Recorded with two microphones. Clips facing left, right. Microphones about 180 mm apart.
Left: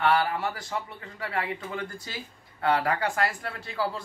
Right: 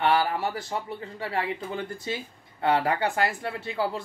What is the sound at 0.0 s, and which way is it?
Speech, 30° right (ahead or behind).